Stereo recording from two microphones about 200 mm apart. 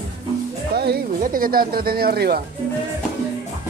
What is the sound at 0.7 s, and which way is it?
Music, 50° right (ahead or behind).